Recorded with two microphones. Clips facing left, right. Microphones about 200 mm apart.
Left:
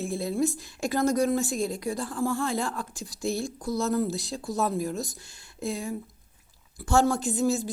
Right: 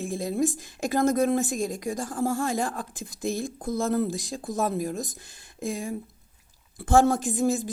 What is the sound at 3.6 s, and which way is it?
Speech, 50° right (ahead or behind).